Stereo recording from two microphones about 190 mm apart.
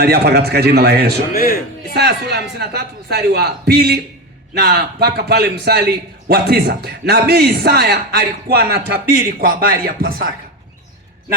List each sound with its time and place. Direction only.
0.0 s a man's voice: 55° right (ahead or behind)
1.3 s a man's voice: 50° left (ahead or behind)
1.9 s a man's voice: 60° right (ahead or behind)